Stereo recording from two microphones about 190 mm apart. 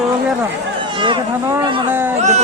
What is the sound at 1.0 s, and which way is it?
Speech, 25° right (ahead or behind).